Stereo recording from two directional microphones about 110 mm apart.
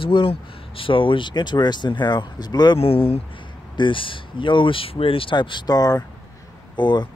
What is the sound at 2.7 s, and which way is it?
Speech, 60° left (ahead or behind).